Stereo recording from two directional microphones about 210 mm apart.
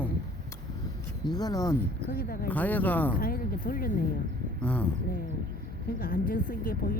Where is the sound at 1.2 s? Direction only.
20° left (ahead or behind).